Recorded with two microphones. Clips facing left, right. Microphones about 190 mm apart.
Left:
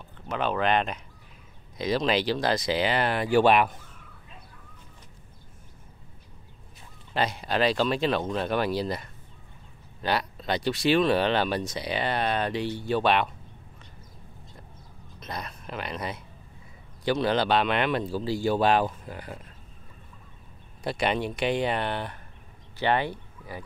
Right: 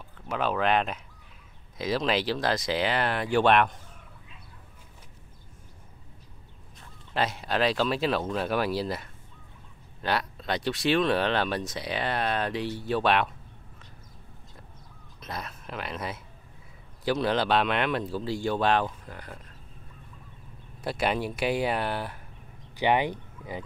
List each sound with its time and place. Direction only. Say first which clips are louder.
0.3 s speech: even; centre (ahead or behind)
7.2 s speech: left 1 dB; centre (ahead or behind)
15.1 s speech: left 1 dB; centre (ahead or behind)
20.8 s speech: left 1 dB; 5° right (ahead or behind)